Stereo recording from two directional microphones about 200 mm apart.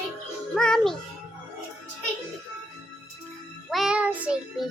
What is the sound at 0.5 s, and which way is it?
Music, 5° left (ahead or behind).